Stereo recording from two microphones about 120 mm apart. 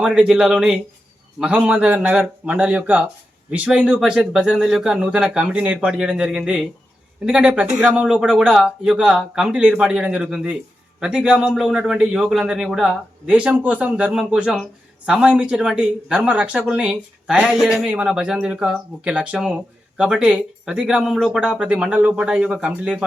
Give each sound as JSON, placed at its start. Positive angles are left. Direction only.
{"t": 0.0, "sound": "a man's voice", "side_deg": -5}